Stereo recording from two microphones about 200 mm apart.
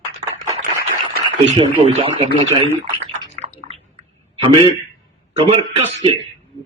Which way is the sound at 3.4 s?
30° right (ahead or behind).